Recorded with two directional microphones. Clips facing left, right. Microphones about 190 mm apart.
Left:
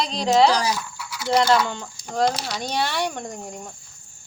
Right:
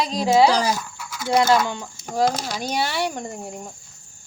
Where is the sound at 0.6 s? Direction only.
45° right (ahead or behind).